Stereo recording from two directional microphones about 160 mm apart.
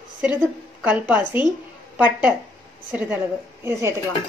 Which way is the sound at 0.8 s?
10° right (ahead or behind).